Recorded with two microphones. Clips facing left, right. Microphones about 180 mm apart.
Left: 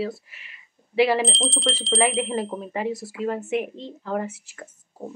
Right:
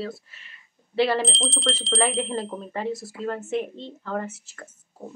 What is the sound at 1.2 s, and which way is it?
Speech, centre (ahead or behind).